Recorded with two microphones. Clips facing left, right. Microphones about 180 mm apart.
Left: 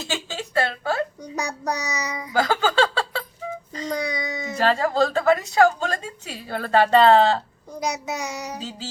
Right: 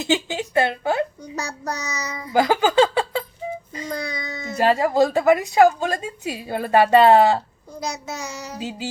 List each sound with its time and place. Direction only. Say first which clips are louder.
0.0 s a sound: right 7 dB; 15° right (ahead or behind)
1.2 s child singing: left 1 dB; 15° left (ahead or behind)
2.3 s a sound: right 4 dB; 15° right (ahead or behind)
3.7 s child singing: left 1 dB; 10° right (ahead or behind)
3.9 s child singing: left 3 dB; 15° left (ahead or behind)
4.5 s a woman's voice: right 3 dB; 10° right (ahead or behind)
7.8 s child singing: left 2 dB; 15° left (ahead or behind)